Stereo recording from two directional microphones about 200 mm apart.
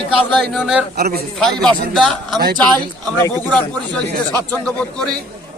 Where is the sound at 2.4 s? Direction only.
50° right (ahead or behind).